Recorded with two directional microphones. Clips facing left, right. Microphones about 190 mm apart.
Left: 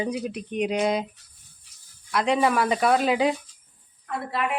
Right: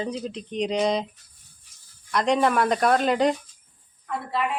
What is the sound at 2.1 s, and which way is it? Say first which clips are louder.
Speech: right 1 dB; 5° left (ahead or behind).